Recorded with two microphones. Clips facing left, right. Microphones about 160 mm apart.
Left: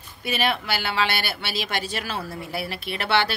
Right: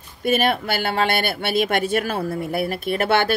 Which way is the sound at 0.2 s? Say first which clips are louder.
Right 6 dB; 50° right (ahead or behind).